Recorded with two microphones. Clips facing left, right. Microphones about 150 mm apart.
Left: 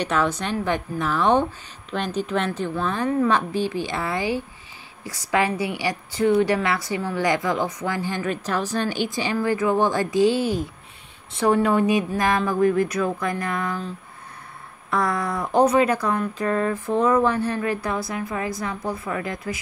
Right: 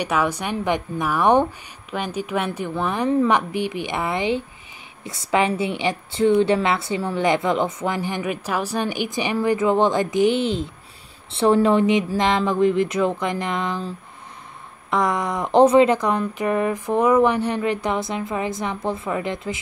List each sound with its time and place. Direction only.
0.0 s a woman's voice: 10° right (ahead or behind)
14.9 s a woman's voice: 20° right (ahead or behind)